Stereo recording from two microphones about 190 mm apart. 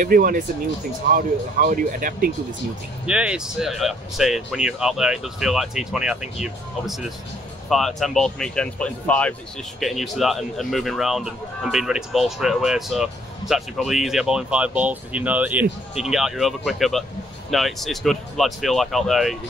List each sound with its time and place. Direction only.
0.0 s speech: 50° right (ahead or behind)
3.1 s speech: 5° right (ahead or behind)